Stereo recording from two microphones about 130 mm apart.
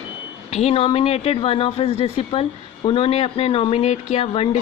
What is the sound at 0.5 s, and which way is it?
Speech, 50° left (ahead or behind).